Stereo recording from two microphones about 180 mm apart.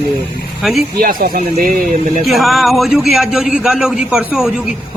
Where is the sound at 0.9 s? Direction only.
55° right (ahead or behind).